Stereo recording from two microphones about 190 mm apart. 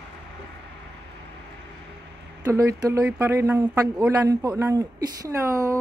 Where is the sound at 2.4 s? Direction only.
15° right (ahead or behind).